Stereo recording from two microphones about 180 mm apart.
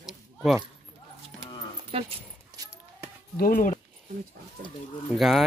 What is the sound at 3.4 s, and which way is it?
Speech, 50° left (ahead or behind).